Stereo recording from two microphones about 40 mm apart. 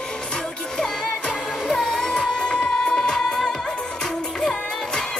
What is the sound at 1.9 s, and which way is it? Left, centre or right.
Music, centre.